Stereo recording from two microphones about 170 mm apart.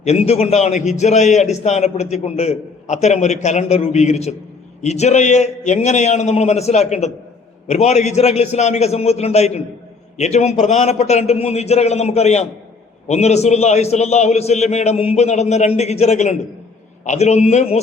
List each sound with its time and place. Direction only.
0.0 s a man's voice: 40° left (ahead or behind)